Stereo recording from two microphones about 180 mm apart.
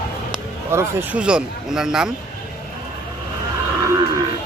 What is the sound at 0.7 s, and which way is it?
Speech, 10° right (ahead or behind).